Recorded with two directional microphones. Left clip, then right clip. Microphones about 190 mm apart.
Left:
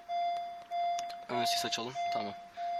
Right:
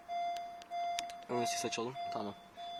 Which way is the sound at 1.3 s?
10° right (ahead or behind).